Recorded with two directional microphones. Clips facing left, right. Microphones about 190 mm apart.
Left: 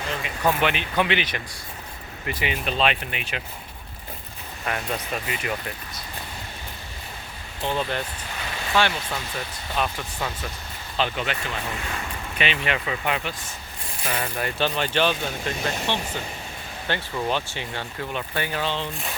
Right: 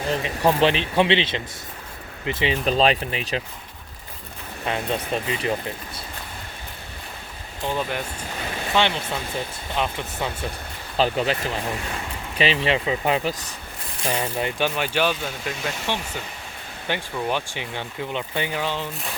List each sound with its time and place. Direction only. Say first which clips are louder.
0.0 s speech: right 4 dB; 35° right (ahead or behind)
4.6 s speech: right 3 dB; 25° right (ahead or behind)
7.7 s speech: even; 10° right (ahead or behind)
8.7 s speech: right 1 dB; 20° right (ahead or behind)
10.9 s speech: right 5 dB; 35° right (ahead or behind); by 18.9 s 10° right (ahead or behind)